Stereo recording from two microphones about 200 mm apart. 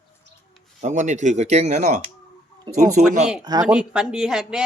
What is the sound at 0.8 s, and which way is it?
Speech, 35° right (ahead or behind).